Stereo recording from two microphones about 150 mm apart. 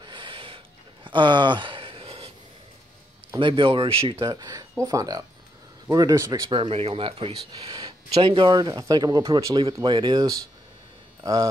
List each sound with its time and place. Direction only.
0.0 s a sound: 35° right (ahead or behind)
3.3 s speech: 35° right (ahead or behind)
4.2 s speech: 25° right (ahead or behind)
6.5 s speech: 35° right (ahead or behind)